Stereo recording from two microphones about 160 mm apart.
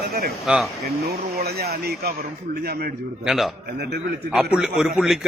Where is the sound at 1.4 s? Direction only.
80° right.